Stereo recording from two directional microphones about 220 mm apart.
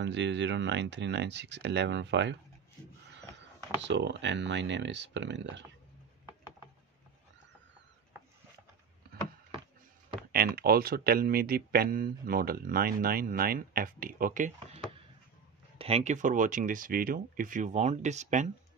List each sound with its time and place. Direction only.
0.0 s speech: 55° right (ahead or behind)
3.3 s speech: 50° right (ahead or behind)
10.3 s speech: 45° right (ahead or behind)
15.8 s speech: 30° right (ahead or behind)